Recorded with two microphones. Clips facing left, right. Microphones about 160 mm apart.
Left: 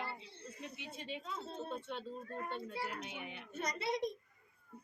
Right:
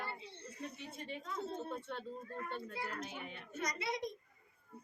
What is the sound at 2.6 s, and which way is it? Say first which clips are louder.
Speech: left 1 dB; 10° left (ahead or behind).